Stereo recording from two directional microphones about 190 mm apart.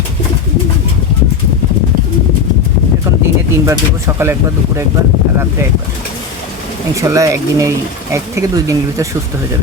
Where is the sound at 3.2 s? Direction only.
15° right (ahead or behind).